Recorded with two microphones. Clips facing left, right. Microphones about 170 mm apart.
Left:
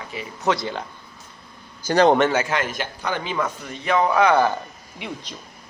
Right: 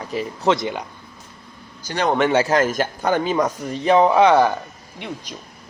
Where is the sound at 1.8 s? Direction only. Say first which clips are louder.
Left 7 dB; 40° left (ahead or behind).